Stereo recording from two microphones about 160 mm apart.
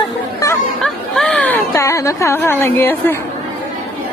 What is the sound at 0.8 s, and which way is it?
Speech, 5° left (ahead or behind).